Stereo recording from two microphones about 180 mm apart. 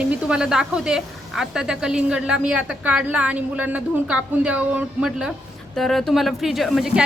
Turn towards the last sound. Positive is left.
turn(degrees=0)  # may be behind; listen again after turning